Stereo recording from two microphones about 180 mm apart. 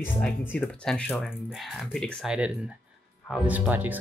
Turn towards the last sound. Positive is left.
turn(degrees=-10)  # may be behind; listen again after turning